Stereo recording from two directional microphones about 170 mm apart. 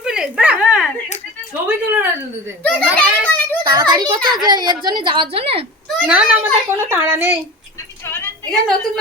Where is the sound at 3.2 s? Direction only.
10° left (ahead or behind).